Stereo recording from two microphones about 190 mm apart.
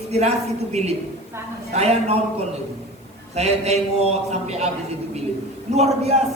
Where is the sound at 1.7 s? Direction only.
35° right (ahead or behind).